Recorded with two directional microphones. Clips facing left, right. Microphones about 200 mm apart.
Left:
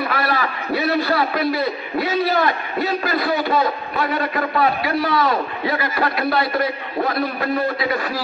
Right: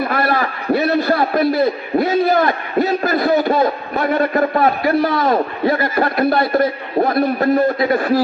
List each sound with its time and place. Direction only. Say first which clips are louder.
0.0 s a man's voice: right 4 dB; 50° right (ahead or behind)